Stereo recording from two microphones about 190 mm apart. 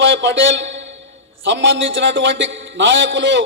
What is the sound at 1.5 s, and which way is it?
A man's voice, 75° right (ahead or behind).